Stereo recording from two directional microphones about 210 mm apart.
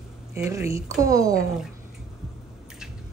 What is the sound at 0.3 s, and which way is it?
A woman's voice, 10° right (ahead or behind).